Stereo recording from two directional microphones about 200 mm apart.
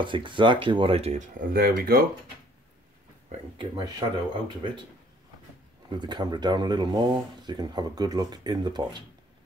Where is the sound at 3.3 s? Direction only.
25° right (ahead or behind).